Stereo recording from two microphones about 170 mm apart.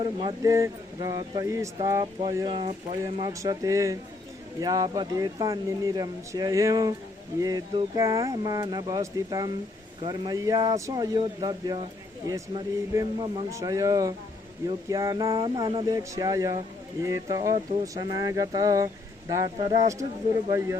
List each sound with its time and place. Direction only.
0.0 s speech: 30° right (ahead or behind)